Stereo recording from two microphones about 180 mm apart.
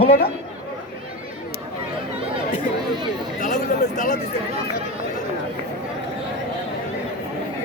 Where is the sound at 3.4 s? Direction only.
45° left (ahead or behind).